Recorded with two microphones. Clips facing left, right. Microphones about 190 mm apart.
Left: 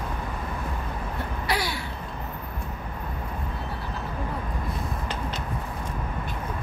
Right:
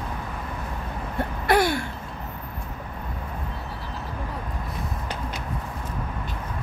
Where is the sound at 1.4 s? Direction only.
50° right (ahead or behind).